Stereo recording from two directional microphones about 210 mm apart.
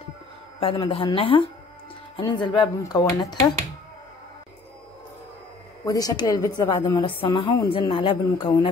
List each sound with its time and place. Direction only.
0.6 s a woman's voice: 25° left (ahead or behind)
5.9 s a woman's voice: 15° left (ahead or behind)